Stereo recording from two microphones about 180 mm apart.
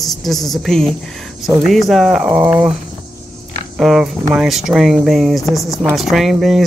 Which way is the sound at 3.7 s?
Centre (ahead or behind).